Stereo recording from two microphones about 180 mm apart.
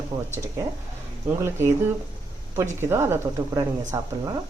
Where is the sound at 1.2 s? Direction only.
15° right (ahead or behind).